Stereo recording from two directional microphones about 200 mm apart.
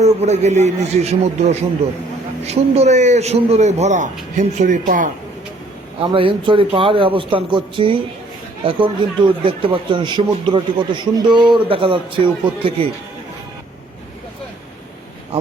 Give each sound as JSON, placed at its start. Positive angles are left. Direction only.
{"t": 0.0, "sound": "speech", "side_deg": -35}
{"t": 6.0, "sound": "speech", "side_deg": -25}